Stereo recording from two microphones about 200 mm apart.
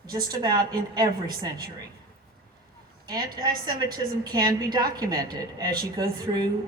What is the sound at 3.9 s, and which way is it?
A woman's voice, 20° right (ahead or behind).